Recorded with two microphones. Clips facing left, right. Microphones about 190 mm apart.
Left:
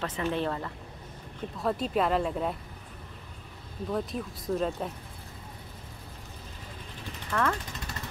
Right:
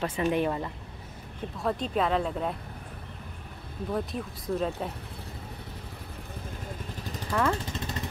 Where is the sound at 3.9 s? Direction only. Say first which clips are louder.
Even; centre (ahead or behind).